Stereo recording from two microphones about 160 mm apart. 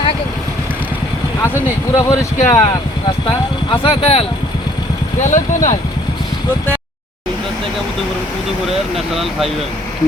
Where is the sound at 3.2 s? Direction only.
30° left (ahead or behind).